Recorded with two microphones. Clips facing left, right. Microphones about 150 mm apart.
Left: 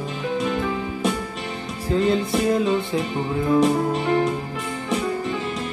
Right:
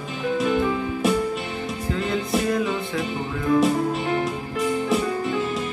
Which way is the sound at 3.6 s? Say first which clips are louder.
Left 2 dB; centre (ahead or behind).